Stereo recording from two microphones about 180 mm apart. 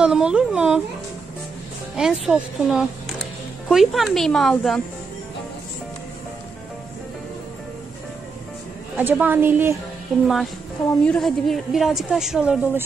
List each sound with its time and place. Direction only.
0.0 s a woman's voice: 5° right (ahead or behind)
2.0 s a woman's voice: centre (ahead or behind)
8.9 s a woman's voice: 10° right (ahead or behind)
10.2 s a woman's voice: centre (ahead or behind)